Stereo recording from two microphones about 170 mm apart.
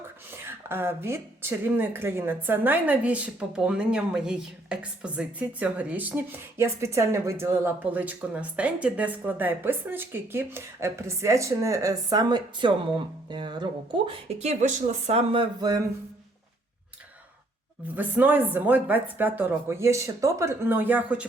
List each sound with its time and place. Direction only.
0.4 s speech: 15° right (ahead or behind)
17.9 s speech: 10° right (ahead or behind)